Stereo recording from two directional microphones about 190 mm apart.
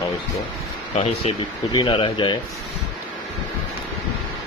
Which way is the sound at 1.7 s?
25° left (ahead or behind).